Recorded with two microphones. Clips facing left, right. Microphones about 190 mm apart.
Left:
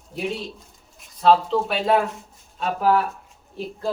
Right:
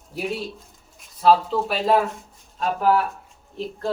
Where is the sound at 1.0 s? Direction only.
5° right (ahead or behind).